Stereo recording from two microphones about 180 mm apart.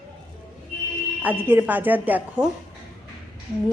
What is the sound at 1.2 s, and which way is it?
Speech, 10° right (ahead or behind).